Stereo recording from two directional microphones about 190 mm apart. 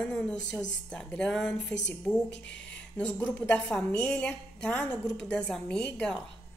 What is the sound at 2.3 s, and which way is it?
Speech, 70° left (ahead or behind).